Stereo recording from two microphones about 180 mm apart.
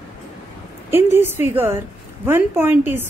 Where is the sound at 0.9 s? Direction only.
10° right (ahead or behind).